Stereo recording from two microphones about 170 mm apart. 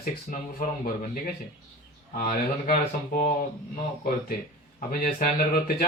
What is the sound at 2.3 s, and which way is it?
Mantra, 55° left (ahead or behind).